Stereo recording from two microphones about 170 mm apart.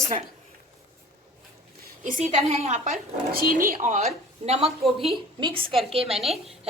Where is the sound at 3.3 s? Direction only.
55° right (ahead or behind).